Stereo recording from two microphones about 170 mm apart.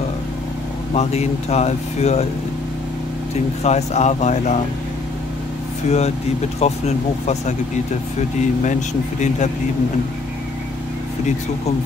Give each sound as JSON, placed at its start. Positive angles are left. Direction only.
{"t": 0.9, "sound": "speech", "side_deg": 40}
{"t": 3.6, "sound": "speech", "side_deg": 40}
{"t": 5.9, "sound": "speech", "side_deg": 40}